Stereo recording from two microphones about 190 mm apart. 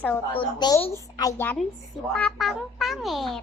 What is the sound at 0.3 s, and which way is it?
Speech, 20° left (ahead or behind).